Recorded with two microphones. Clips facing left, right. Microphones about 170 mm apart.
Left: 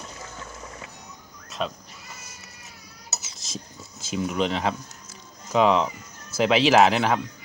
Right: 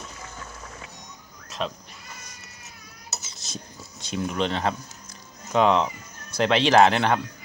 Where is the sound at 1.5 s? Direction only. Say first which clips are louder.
Even; centre (ahead or behind).